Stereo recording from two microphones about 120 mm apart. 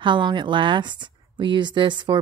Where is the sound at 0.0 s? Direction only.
40° right (ahead or behind).